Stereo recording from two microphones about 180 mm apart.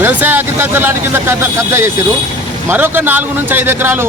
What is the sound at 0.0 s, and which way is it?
Speech, 10° right (ahead or behind).